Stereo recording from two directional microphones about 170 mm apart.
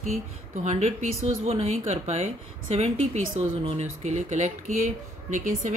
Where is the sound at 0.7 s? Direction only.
40° right (ahead or behind).